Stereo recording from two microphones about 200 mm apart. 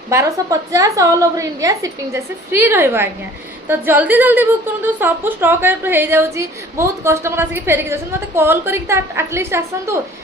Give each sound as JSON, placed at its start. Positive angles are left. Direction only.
{"t": 0.1, "sound": "a woman's voice", "side_deg": -15}